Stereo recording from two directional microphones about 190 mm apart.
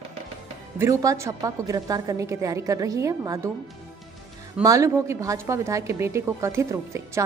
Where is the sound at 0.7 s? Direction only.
15° right (ahead or behind).